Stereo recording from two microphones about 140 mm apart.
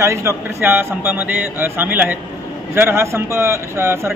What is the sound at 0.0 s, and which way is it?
Speech, 20° right (ahead or behind).